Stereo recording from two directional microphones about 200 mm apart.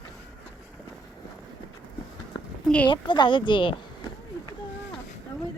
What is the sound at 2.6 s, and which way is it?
Speech, 5° left (ahead or behind).